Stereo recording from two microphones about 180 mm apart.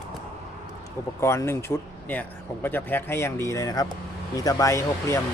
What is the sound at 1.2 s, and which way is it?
Speech, 15° left (ahead or behind).